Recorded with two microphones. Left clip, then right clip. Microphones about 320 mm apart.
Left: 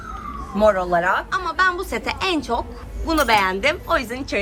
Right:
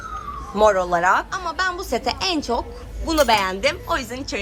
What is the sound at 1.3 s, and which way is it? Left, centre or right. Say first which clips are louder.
A woman's voice: left 4 dB; centre.